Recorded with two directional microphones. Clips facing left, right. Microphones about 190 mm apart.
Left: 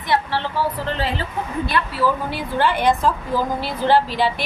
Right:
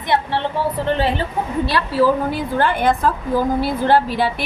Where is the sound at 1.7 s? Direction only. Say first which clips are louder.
Right 5 dB; 45° right (ahead or behind).